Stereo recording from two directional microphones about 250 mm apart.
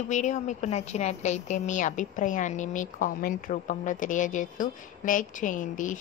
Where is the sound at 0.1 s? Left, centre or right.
Left.